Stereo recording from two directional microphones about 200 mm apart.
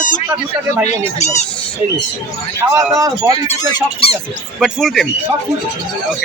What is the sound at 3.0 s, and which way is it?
Speech, 15° right (ahead or behind).